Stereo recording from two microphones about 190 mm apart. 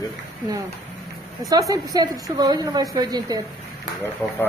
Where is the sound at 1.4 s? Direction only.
20° right (ahead or behind).